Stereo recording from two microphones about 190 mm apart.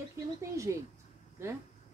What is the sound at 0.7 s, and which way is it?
Speech, 15° right (ahead or behind).